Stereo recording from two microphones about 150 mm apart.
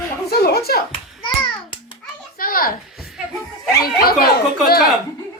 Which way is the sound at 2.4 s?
70° left (ahead or behind).